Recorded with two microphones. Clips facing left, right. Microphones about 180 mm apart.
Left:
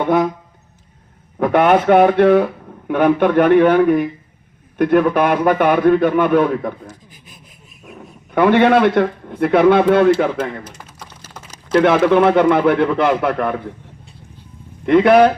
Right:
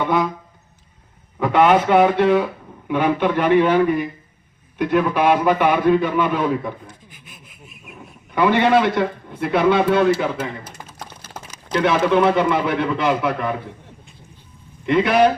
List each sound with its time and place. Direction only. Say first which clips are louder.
0.0 s speech: left 4 dB; 50° left (ahead or behind)
1.4 s a man's voice: left 2 dB; 55° left (ahead or behind)
7.1 s sawing: left 1 dB; 35° left (ahead or behind)
8.4 s a man's voice: left 4 dB; 55° left (ahead or behind)
11.7 s a man's voice: left 5 dB; 55° left (ahead or behind)
14.8 s speech: left 5 dB; 55° left (ahead or behind)